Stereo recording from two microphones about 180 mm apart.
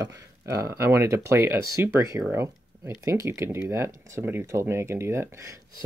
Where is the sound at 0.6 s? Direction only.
15° right (ahead or behind).